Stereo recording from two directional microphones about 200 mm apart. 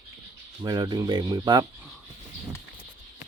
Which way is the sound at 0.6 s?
20° right (ahead or behind).